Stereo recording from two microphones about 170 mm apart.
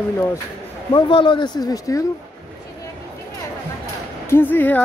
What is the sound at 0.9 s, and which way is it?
A man's voice, 30° left (ahead or behind).